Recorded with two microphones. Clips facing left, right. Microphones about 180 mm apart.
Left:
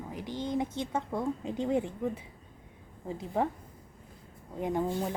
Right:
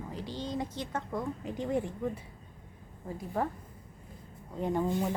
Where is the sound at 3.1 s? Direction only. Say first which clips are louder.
Left 2 dB; 20° left (ahead or behind).